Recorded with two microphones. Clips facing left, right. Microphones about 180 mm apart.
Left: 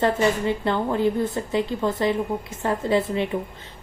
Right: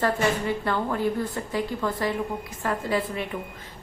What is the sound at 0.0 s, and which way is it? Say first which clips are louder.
A woman's voice: left 3 dB; 20° left (ahead or behind).